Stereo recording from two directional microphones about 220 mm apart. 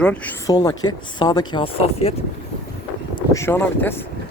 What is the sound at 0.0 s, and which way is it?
Speech, 5° left (ahead or behind).